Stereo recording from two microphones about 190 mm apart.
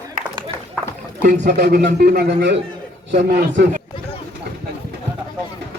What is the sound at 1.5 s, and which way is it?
Speech, 60° right (ahead or behind).